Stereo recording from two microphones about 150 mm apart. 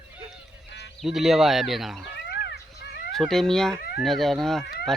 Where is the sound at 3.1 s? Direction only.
Centre (ahead or behind).